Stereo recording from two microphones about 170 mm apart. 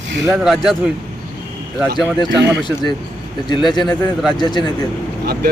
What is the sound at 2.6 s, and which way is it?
A man's voice, 25° left (ahead or behind).